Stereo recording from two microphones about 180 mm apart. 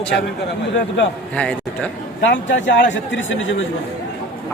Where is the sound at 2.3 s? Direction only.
90° left.